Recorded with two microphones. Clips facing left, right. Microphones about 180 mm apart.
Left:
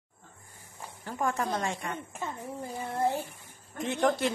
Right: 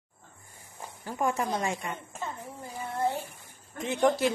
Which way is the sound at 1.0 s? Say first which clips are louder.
Right 2 dB; 10° right (ahead or behind).